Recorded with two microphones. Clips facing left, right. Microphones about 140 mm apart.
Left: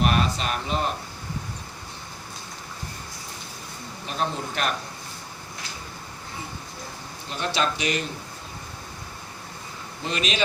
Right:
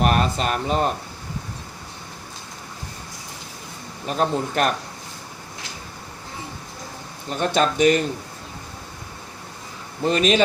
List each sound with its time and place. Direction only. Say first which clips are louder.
0.0 s a sound: right 3 dB; 45° right (ahead or behind)
4.0 s speech: right 6 dB; 45° right (ahead or behind)
7.3 s speech: right 6 dB; 45° right (ahead or behind)
10.1 s speech: right 10 dB; 45° right (ahead or behind)